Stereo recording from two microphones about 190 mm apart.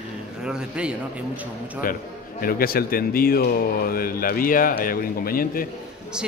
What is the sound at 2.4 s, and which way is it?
Speech, 50° left (ahead or behind).